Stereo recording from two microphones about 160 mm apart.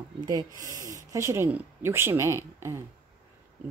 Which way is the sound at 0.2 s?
25° right (ahead or behind).